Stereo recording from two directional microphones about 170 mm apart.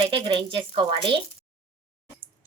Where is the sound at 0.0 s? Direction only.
30° right (ahead or behind).